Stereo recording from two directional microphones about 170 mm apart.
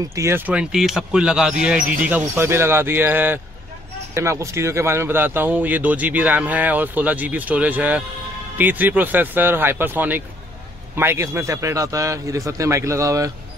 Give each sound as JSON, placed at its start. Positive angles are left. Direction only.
{"t": 0.1, "sound": "speech", "side_deg": -15}